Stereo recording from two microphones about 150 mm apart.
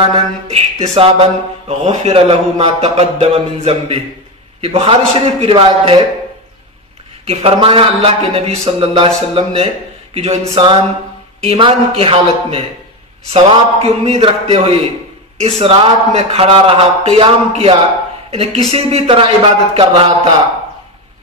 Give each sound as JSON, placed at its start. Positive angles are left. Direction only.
{"t": 0.1, "sound": "a man's voice", "side_deg": -40}
{"t": 7.2, "sound": "a man's voice", "side_deg": -40}